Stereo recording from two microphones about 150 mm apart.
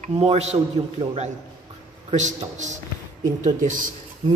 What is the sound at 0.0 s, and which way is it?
A man's voice, 45° right (ahead or behind).